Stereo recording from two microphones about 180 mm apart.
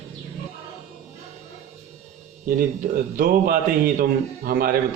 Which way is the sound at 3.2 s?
50° right (ahead or behind).